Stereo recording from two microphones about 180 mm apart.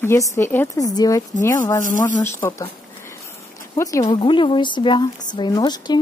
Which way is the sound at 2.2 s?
15° left (ahead or behind).